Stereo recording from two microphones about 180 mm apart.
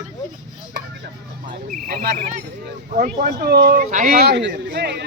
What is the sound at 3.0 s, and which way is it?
Speech, 40° right (ahead or behind).